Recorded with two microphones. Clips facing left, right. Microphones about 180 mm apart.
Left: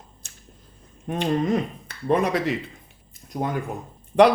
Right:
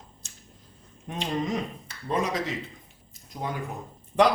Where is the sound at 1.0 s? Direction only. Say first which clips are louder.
Left 7 dB; 55° left (ahead or behind).